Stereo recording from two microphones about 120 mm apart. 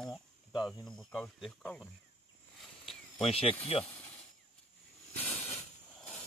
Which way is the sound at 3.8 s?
10° left (ahead or behind).